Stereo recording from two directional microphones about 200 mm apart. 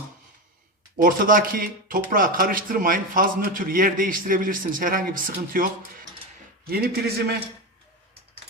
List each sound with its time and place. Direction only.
1.0 s speech: 45° right (ahead or behind)
6.7 s speech: 50° right (ahead or behind)